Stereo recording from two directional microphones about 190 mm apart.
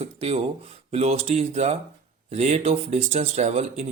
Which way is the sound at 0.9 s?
35° right (ahead or behind).